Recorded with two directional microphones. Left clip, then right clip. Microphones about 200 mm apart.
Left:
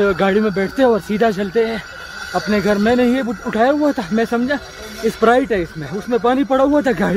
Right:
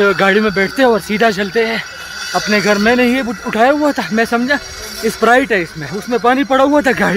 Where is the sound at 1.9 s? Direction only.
25° left (ahead or behind).